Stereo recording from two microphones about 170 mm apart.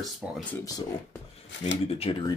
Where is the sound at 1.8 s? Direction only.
35° left (ahead or behind).